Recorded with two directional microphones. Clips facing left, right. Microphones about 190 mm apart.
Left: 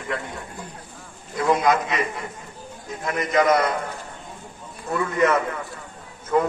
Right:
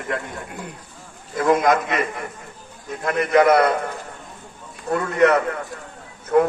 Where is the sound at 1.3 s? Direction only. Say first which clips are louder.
Right 2 dB; 50° right (ahead or behind).